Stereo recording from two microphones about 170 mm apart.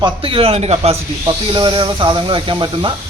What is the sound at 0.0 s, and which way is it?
A man's voice, 35° right (ahead or behind).